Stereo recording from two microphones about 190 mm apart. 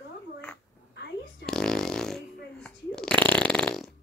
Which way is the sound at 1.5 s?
5° left (ahead or behind).